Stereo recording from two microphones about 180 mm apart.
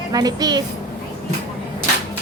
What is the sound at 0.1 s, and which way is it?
Speech, 20° right (ahead or behind).